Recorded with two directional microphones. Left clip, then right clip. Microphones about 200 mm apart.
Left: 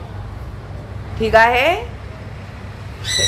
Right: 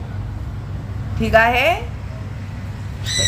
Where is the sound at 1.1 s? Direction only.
15° right (ahead or behind).